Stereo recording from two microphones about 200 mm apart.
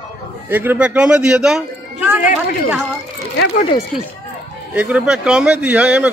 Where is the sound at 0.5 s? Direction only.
10° right (ahead or behind).